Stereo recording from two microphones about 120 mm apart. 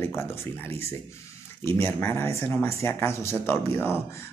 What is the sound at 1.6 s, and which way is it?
Speech, 20° left (ahead or behind).